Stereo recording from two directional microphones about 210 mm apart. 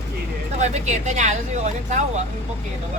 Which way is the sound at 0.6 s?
35° right (ahead or behind).